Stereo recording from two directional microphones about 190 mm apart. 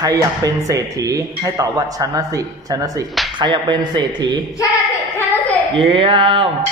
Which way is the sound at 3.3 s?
25° right (ahead or behind).